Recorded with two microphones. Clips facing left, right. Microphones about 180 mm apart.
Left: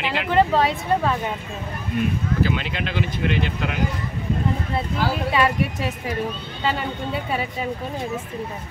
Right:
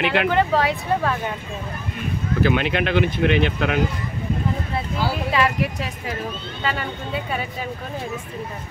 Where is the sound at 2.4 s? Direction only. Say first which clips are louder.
Right 5 dB; 60° right (ahead or behind).